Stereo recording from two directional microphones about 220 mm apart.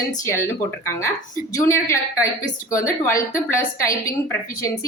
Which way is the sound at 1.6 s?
10° left (ahead or behind).